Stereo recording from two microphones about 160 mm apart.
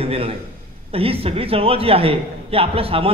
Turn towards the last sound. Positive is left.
turn(degrees=-35)  # may be behind; listen again after turning